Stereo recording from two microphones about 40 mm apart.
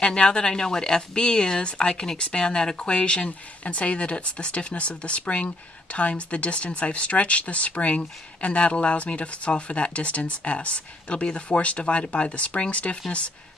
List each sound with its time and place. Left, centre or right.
0.0 s speech: left